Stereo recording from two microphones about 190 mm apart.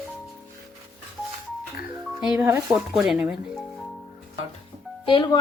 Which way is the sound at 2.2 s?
10° right (ahead or behind).